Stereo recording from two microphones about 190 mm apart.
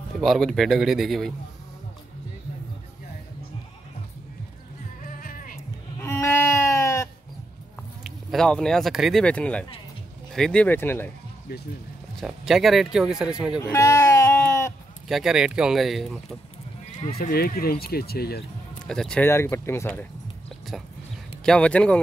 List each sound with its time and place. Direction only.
0.2 s speech: centre (ahead or behind)
5.0 s music: 45° left (ahead or behind)
5.9 s sheep: 15° left (ahead or behind)
8.0 s speech: centre (ahead or behind)
12.2 s speech: centre (ahead or behind)
13.6 s sheep: 15° left (ahead or behind)
15.0 s speech: centre (ahead or behind)
17.2 s speech: 50° left (ahead or behind)
18.9 s speech: 5° left (ahead or behind)
21.5 s speech: 5° left (ahead or behind)